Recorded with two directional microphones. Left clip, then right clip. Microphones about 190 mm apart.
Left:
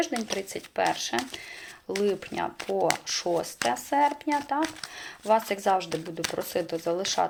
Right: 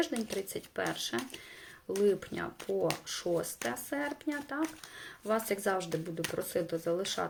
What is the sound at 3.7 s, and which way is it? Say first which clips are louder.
Speech: left 16 dB; 20° right (ahead or behind).